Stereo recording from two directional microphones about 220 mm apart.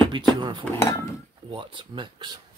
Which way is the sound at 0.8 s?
15° left (ahead or behind).